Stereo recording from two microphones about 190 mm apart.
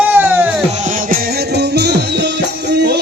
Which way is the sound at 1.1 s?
60° right (ahead or behind).